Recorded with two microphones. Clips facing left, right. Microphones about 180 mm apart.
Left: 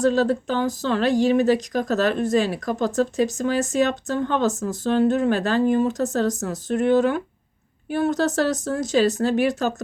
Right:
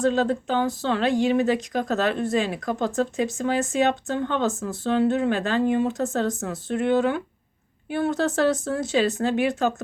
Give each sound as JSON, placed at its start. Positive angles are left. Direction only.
{"t": 0.0, "sound": "speech", "side_deg": 40}